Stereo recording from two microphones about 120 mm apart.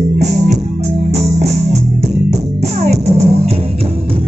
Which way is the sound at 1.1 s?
65° right (ahead or behind).